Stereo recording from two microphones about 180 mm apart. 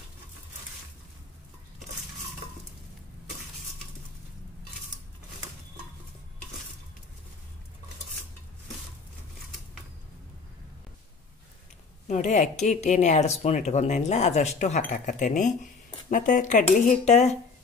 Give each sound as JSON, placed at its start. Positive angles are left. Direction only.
{"t": 12.1, "sound": "speech", "side_deg": 40}